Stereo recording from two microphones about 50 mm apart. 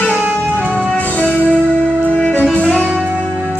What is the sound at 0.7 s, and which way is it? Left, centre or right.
Music, left.